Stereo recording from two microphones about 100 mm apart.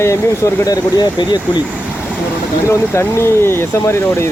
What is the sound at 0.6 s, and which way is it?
Speech, 40° left (ahead or behind).